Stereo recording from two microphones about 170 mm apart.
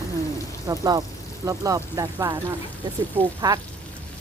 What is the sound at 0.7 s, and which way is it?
Speech, 25° right (ahead or behind).